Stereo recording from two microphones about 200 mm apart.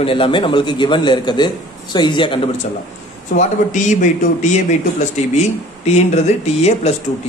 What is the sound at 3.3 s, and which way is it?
Speech, 40° left (ahead or behind).